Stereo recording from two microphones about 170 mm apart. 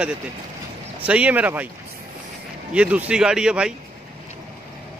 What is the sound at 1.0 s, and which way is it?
Speech, 10° right (ahead or behind).